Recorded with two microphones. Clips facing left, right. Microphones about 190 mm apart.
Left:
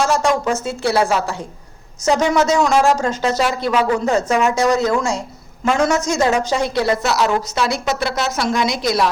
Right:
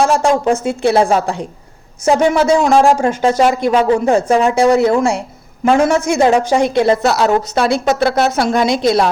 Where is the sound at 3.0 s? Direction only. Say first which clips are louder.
Right 5 dB; 15° right (ahead or behind).